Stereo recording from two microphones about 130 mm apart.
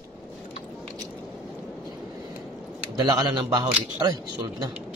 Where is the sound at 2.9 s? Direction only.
30° right (ahead or behind).